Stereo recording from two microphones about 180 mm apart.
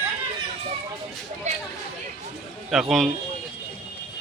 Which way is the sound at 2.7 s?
Centre (ahead or behind).